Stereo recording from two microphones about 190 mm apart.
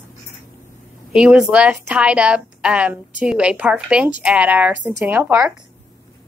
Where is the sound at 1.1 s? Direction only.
5° right (ahead or behind).